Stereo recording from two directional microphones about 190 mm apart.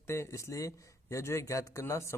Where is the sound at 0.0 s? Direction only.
15° left (ahead or behind).